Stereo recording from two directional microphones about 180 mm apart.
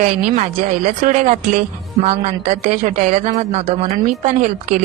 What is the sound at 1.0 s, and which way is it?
A woman's voice, 45° right (ahead or behind).